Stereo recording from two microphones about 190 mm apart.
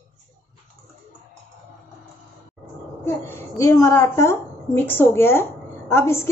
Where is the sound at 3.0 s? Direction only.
15° left (ahead or behind).